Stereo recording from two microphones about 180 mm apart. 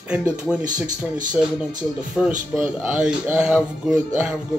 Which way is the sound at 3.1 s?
5° right (ahead or behind).